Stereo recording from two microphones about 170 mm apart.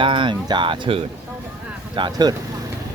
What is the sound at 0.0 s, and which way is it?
Speech, 30° right (ahead or behind).